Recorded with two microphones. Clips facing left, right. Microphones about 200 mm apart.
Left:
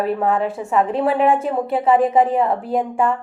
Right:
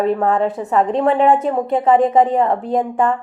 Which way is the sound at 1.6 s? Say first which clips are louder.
Right 1 dB; 5° left (ahead or behind).